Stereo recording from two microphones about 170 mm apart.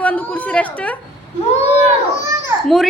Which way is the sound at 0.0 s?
10° left (ahead or behind).